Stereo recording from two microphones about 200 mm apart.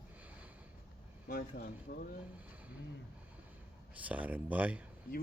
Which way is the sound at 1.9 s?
50° left (ahead or behind).